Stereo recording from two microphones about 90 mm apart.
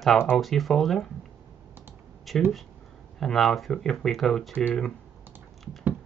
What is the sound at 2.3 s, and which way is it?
Speech, centre (ahead or behind).